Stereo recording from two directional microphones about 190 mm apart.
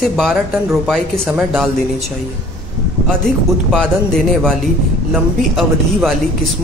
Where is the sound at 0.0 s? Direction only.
Centre (ahead or behind).